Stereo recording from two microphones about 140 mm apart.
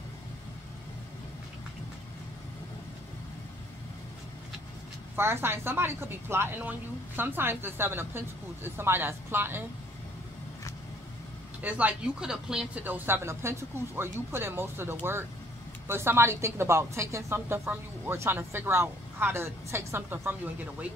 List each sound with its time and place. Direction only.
5.1 s a woman's voice: 15° right (ahead or behind)
11.6 s a woman's voice: 10° right (ahead or behind)